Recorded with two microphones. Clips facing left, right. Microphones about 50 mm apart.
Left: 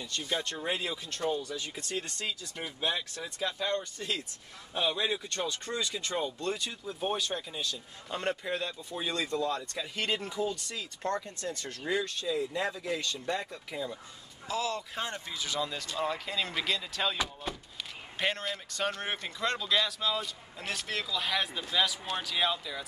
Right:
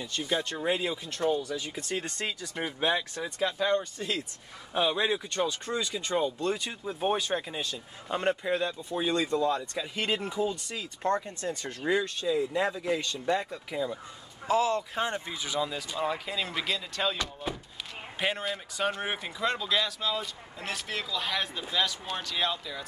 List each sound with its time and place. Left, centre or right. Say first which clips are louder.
0.0 s speech: right 3 dB; centre
2.0 s speech: right 3 dB; right
2.9 s speech: right 5 dB; centre
14.5 s speech: right 7 dB; right; by 22.8 s centre